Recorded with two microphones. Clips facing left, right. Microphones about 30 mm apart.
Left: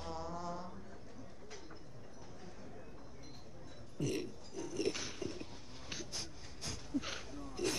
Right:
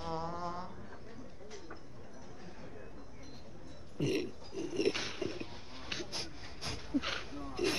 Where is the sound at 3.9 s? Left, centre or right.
Right.